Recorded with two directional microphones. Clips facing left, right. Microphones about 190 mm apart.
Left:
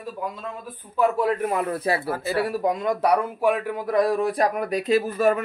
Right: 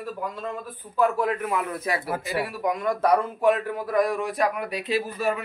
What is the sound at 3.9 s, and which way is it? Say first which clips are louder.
Speech: left 3 dB; 30° left (ahead or behind).